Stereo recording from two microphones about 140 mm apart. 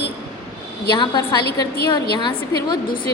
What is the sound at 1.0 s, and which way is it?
A woman's voice, 30° left (ahead or behind).